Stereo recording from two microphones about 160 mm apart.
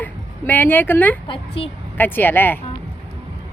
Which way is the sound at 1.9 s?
10° left (ahead or behind).